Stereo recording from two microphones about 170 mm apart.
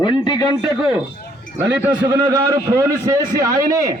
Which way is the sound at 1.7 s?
10° right (ahead or behind).